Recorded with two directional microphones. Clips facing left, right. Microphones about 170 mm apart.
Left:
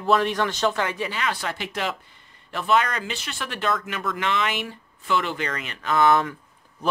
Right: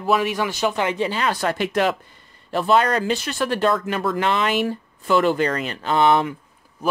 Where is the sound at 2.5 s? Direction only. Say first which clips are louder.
Right 5 dB; 35° right (ahead or behind).